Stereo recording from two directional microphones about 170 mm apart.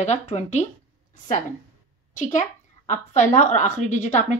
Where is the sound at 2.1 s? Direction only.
45° left (ahead or behind).